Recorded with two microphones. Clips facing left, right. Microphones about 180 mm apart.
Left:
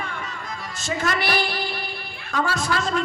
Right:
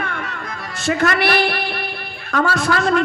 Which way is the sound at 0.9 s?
65° right (ahead or behind).